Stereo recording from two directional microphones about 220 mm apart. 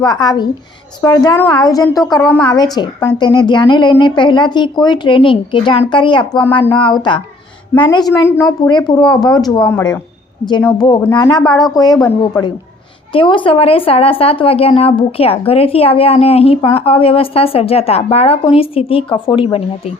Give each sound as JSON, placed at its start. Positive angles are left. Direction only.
{"t": 0.0, "sound": "a woman's voice", "side_deg": 20}
{"t": 13.1, "sound": "a woman's voice", "side_deg": 20}